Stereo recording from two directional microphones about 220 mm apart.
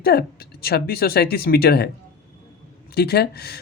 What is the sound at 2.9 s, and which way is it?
Speech, 45° left (ahead or behind).